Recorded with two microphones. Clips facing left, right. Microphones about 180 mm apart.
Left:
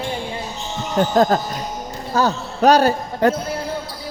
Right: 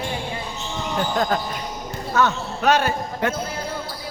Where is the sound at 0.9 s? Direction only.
40° left (ahead or behind).